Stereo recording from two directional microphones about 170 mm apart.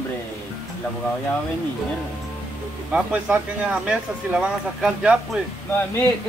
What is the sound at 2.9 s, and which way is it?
Speech, 5° right (ahead or behind).